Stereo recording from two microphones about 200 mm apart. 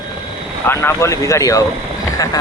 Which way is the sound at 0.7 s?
15° left (ahead or behind).